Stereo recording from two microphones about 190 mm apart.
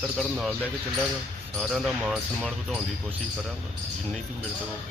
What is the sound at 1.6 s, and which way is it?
Speech, centre (ahead or behind).